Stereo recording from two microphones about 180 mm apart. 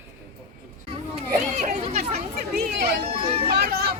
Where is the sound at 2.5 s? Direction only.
60° right (ahead or behind).